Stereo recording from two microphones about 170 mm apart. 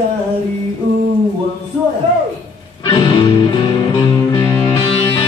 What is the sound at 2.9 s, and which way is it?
Music, 25° left (ahead or behind).